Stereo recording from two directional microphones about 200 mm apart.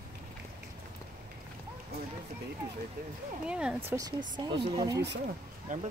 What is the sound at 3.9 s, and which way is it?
Speech, 20° right (ahead or behind).